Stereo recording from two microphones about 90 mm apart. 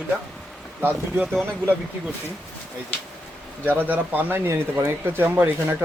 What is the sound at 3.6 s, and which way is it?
Speech, 20° right (ahead or behind).